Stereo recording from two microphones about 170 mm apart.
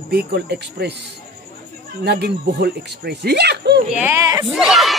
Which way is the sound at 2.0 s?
75° right (ahead or behind).